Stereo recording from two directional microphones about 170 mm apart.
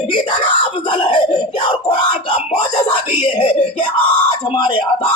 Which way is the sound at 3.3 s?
30° left (ahead or behind).